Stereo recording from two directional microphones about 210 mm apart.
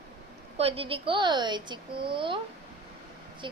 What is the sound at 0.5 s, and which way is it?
A woman's voice, 30° right (ahead or behind).